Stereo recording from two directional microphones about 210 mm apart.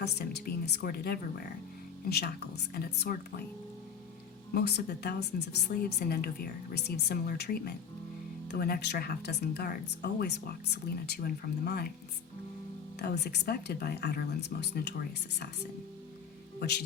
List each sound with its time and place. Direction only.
0.0 s speech: 50° left (ahead or behind)
4.5 s speech: 50° left (ahead or behind)
13.0 s speech: 50° left (ahead or behind)
16.6 s speech: 50° left (ahead or behind)